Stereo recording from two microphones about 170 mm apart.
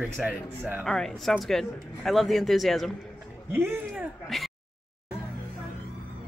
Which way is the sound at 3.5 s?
15° right (ahead or behind).